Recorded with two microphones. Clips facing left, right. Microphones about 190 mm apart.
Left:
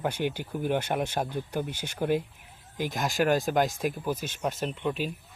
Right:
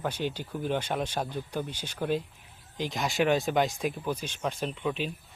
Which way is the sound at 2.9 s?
Centre (ahead or behind).